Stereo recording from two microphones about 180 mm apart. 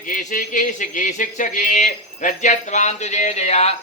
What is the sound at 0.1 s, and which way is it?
Speech, 45° left (ahead or behind).